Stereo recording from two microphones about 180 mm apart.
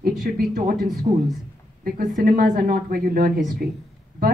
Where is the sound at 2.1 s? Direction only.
55° right (ahead or behind).